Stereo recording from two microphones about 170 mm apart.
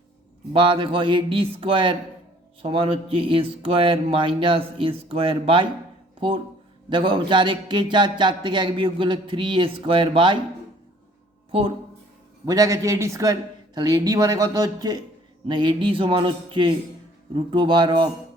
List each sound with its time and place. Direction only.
0.5 s music: 30° right (ahead or behind)
6.1 s speech: 30° right (ahead or behind)
12.5 s speech: 20° right (ahead or behind)